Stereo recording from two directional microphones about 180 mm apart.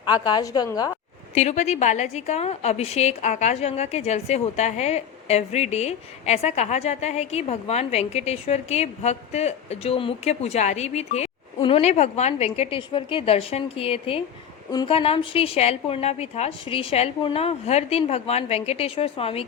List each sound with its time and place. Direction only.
0.0 s a woman's voice: 25° left (ahead or behind)
1.3 s a woman's voice: 40° left (ahead or behind)